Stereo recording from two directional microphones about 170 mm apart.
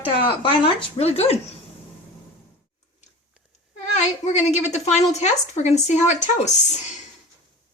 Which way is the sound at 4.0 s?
40° left (ahead or behind).